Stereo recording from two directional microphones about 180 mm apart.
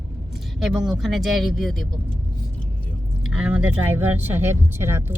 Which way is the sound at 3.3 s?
5° right (ahead or behind).